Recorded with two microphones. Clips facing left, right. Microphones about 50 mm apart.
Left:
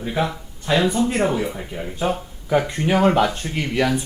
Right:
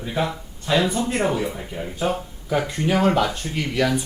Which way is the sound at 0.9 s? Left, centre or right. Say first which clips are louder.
Left 3 dB; left.